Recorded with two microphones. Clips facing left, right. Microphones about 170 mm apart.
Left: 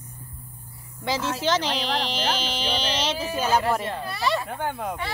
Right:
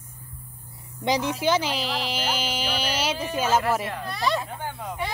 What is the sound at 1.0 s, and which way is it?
Speech, 15° right (ahead or behind).